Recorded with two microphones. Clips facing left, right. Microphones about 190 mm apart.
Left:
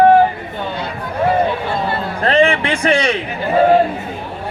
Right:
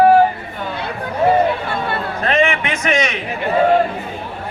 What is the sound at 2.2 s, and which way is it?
A man's voice, 30° left (ahead or behind).